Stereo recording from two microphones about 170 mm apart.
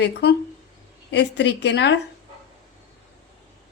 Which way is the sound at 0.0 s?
75° left (ahead or behind).